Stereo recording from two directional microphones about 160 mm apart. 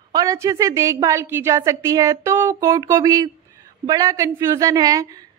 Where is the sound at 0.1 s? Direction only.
20° right (ahead or behind).